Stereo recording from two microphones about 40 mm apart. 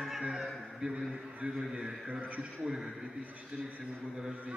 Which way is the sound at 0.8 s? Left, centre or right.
Right.